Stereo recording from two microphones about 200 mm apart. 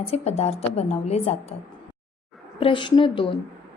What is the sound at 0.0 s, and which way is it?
A woman's voice, 30° left (ahead or behind).